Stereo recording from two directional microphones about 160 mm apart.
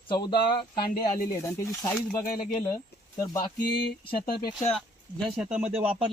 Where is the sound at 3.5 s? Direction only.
70° left (ahead or behind).